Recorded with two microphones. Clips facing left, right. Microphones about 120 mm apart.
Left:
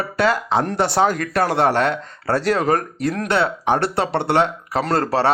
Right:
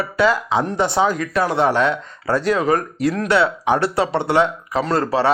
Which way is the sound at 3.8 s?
65° left (ahead or behind).